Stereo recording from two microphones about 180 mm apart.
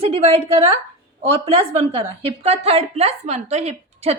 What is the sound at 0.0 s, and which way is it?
A woman's voice, 35° right (ahead or behind).